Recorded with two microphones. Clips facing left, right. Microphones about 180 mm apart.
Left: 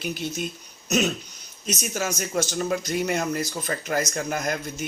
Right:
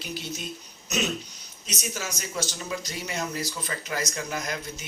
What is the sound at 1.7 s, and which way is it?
Speech, 50° left (ahead or behind).